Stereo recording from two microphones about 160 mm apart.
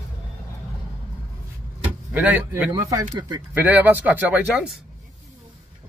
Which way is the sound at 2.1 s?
10° right (ahead or behind).